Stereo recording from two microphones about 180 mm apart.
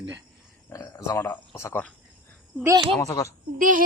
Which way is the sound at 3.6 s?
50° right (ahead or behind).